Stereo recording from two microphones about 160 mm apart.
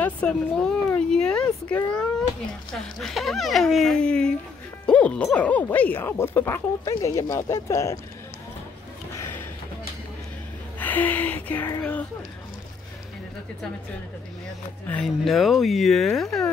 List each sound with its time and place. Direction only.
0.0 s speech: 5° left (ahead or behind)
2.8 s speech: centre (ahead or behind); by 8.0 s 20° left (ahead or behind)
10.8 s speech: 10° left (ahead or behind)
14.9 s speech: 5° left (ahead or behind)